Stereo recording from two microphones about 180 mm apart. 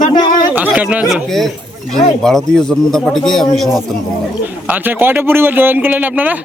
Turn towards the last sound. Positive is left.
turn(degrees=-10)  # may be behind; listen again after turning